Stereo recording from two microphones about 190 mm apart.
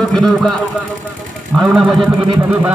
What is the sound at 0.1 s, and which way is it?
Speech, 5° left (ahead or behind).